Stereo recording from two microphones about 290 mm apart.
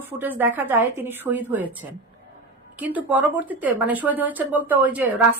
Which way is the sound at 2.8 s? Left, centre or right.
Centre.